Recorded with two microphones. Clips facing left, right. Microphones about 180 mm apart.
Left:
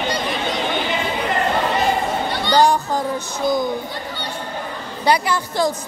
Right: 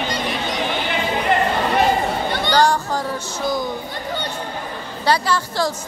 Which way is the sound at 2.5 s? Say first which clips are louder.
Left 2 dB; 15° left (ahead or behind).